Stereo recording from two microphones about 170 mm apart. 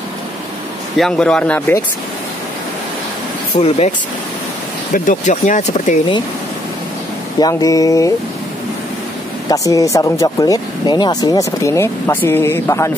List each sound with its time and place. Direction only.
0.9 s speech: 5° left (ahead or behind)
3.6 s speech: 40° left (ahead or behind)
4.9 s speech: 50° left (ahead or behind)
7.3 s speech: 20° left (ahead or behind)
9.5 s speech: 20° left (ahead or behind)